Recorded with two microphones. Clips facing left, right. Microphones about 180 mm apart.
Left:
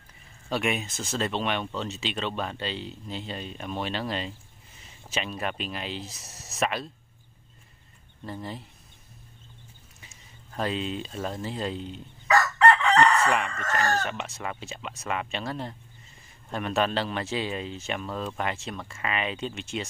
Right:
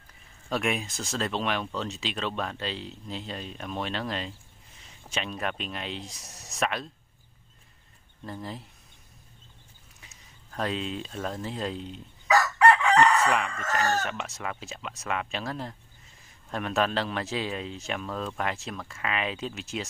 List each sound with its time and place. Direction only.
0.5 s speech: centre (ahead or behind)
8.2 s speech: centre (ahead or behind)
9.9 s speech: centre (ahead or behind)
12.5 s speech: 15° right (ahead or behind)